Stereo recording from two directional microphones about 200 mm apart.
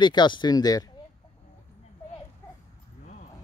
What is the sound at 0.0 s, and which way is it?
Speech, 20° left (ahead or behind).